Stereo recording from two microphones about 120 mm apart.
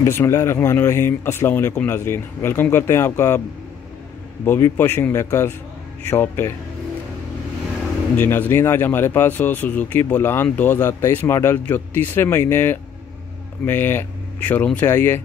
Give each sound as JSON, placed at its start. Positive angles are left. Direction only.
{"t": 0.0, "sound": "speech", "side_deg": 20}
{"t": 4.5, "sound": "speech", "side_deg": 20}
{"t": 8.2, "sound": "speech", "side_deg": 15}